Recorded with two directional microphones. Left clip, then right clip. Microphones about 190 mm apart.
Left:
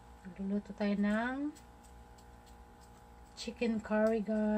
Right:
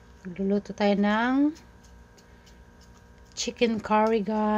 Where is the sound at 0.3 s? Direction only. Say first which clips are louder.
Right 13 dB; 45° right (ahead or behind).